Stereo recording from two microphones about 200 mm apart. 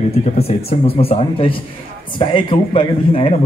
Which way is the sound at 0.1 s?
30° left (ahead or behind).